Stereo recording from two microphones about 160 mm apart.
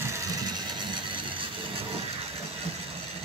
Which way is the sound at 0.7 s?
30° right (ahead or behind).